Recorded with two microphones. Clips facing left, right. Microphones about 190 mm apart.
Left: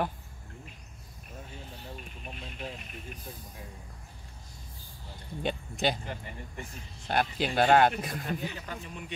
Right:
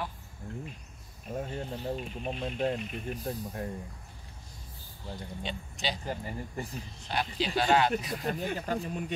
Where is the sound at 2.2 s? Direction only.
60° right (ahead or behind).